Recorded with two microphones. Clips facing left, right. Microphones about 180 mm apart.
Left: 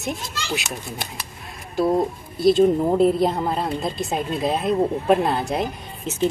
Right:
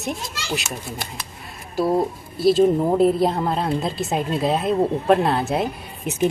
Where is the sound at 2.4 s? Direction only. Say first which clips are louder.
Even; 5° right (ahead or behind).